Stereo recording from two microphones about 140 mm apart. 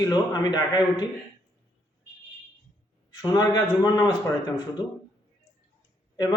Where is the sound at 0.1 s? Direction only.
30° left (ahead or behind).